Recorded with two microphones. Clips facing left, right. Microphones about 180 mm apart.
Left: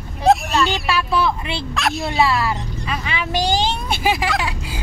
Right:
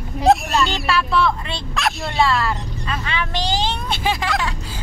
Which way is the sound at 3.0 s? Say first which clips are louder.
Left 4 dB; 10° left (ahead or behind).